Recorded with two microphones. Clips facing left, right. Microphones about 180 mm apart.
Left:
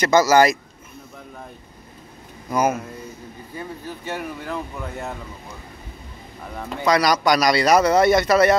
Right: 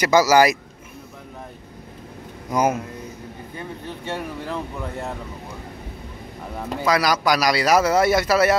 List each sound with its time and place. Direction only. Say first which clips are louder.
0.0 s speech: even; 10° right (ahead or behind)
2.5 s speech: even; 15° right (ahead or behind)
4.1 s speech: even; centre (ahead or behind)
6.8 s speech: left 2 dB; 5° right (ahead or behind)